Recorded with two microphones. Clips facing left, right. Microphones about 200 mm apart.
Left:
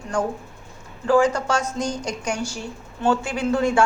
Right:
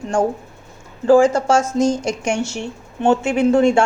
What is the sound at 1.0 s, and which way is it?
A woman's voice, 30° right (ahead or behind).